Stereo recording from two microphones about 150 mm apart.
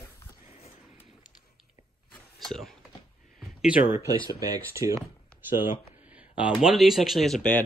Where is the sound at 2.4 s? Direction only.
Centre (ahead or behind).